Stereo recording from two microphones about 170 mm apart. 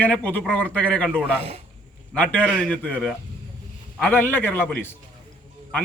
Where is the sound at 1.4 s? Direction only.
35° right (ahead or behind).